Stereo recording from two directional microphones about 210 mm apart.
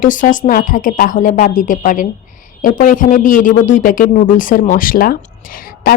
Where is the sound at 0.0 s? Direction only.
40° left (ahead or behind).